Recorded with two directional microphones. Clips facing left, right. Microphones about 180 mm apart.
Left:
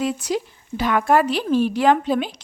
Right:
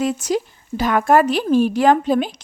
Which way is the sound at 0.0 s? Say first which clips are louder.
Right 3 dB; 45° right (ahead or behind).